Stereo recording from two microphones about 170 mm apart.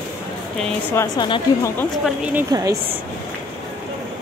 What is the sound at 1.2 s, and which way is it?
Speech, 25° left (ahead or behind).